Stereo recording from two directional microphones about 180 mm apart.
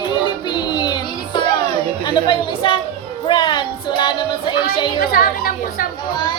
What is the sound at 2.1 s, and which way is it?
Speech, 25° left (ahead or behind).